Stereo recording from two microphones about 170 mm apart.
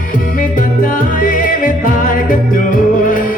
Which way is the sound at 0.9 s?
50° left (ahead or behind).